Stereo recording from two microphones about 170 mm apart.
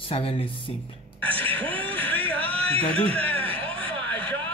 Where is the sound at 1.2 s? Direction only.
10° left (ahead or behind).